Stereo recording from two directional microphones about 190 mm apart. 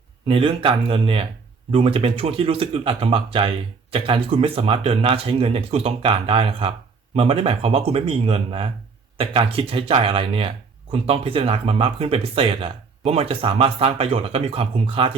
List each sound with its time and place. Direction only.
0.3 s speech: 30° right (ahead or behind)